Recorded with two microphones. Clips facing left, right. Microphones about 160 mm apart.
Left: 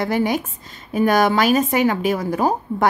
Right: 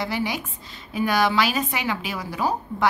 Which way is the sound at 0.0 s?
50° left (ahead or behind).